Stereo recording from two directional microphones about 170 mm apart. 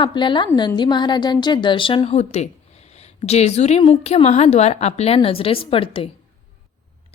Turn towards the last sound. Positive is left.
turn(degrees=30)  # may be behind; listen again after turning